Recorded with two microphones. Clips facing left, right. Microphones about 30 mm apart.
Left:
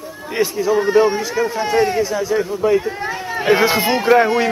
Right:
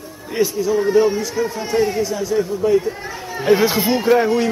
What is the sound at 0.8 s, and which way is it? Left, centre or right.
Speech, left.